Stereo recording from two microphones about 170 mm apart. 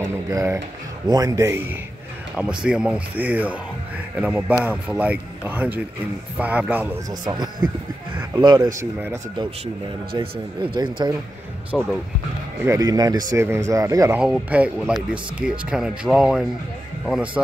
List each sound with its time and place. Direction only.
0.0 s music: 20° right (ahead or behind)
1.0 s speech: 20° right (ahead or behind)
7.1 s speech: 25° right (ahead or behind)
10.1 s speech: 30° right (ahead or behind)
11.7 s speech: centre (ahead or behind)
12.6 s speech: 20° right (ahead or behind)
14.2 s speech: 5° right (ahead or behind)